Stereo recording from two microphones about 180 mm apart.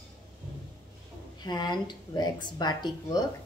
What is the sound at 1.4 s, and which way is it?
Speech, 25° left (ahead or behind).